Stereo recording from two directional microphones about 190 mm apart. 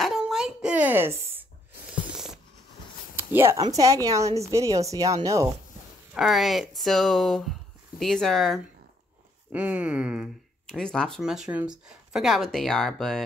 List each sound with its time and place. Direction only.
0.0 s a sound: centre (ahead or behind)
3.2 s speech: 10° right (ahead or behind)
6.1 s speech: centre (ahead or behind)